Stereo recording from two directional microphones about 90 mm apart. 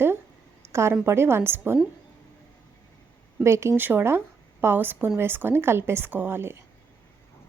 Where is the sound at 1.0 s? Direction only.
30° right (ahead or behind).